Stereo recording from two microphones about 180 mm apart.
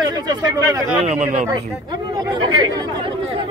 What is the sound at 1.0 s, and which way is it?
Speech, 40° right (ahead or behind).